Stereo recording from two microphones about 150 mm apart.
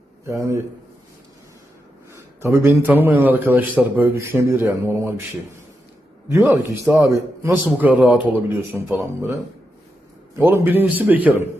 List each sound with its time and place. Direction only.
0.3 s a man's voice: 20° right (ahead or behind)
2.1 s a man's voice: 20° right (ahead or behind)
6.3 s a man's voice: 20° right (ahead or behind)